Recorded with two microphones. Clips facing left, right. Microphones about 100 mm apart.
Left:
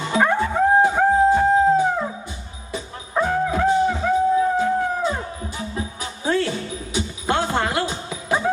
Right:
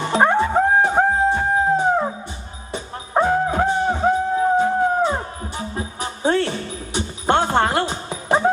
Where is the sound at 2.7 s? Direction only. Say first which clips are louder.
Right 3 dB; 40° right (ahead or behind).